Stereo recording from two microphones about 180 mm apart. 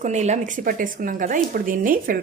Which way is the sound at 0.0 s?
40° right (ahead or behind).